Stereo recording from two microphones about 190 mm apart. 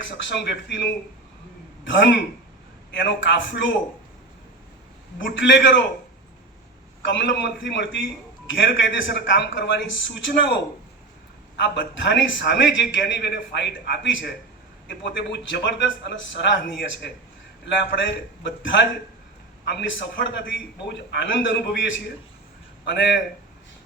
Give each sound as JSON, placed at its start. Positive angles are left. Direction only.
{"t": 0.0, "sound": "a man's voice", "side_deg": 70}
{"t": 5.2, "sound": "a man's voice", "side_deg": 75}
{"t": 7.0, "sound": "a man's voice", "side_deg": 75}
{"t": 11.6, "sound": "a man's voice", "side_deg": 75}
{"t": 20.5, "sound": "a man's voice", "side_deg": 65}